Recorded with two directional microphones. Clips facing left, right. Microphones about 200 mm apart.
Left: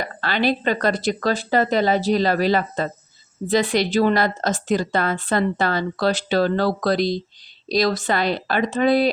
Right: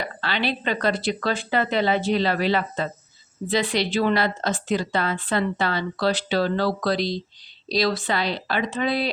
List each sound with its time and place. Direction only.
0.0 s a woman's voice: 45° left (ahead or behind)